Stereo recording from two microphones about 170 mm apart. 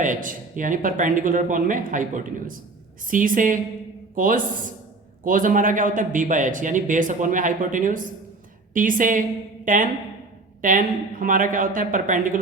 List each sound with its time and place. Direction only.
0.0 s speech: 50° right (ahead or behind)